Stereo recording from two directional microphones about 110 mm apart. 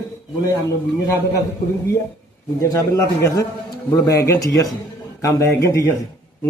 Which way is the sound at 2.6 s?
30° left (ahead or behind).